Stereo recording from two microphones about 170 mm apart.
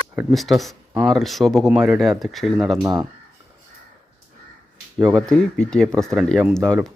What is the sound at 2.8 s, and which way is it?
Speech, 20° right (ahead or behind).